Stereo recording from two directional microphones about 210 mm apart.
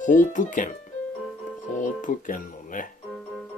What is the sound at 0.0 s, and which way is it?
Speech, 35° left (ahead or behind).